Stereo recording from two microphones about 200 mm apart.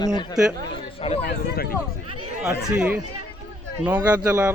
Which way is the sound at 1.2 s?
50° left (ahead or behind).